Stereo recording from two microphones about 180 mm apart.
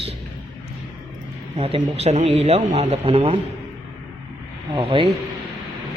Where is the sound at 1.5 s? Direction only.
35° right (ahead or behind).